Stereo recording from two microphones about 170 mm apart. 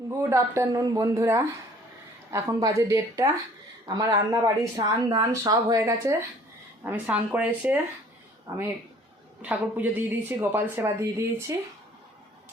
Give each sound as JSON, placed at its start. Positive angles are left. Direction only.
{"t": 0.1, "sound": "speech", "side_deg": -15}
{"t": 6.8, "sound": "speech", "side_deg": -10}
{"t": 8.5, "sound": "speech", "side_deg": -20}